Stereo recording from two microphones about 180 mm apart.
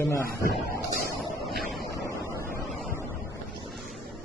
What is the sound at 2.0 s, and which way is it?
Vehicle, 15° left (ahead or behind).